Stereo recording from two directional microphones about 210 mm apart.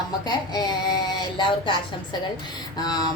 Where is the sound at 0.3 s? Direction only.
20° left (ahead or behind).